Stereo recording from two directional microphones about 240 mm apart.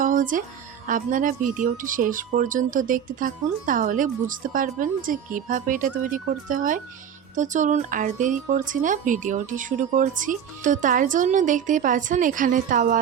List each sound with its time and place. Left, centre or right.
0.0 s music: right
0.9 s speech: right